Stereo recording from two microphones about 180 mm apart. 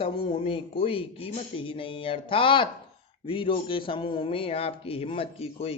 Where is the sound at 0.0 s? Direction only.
30° left (ahead or behind).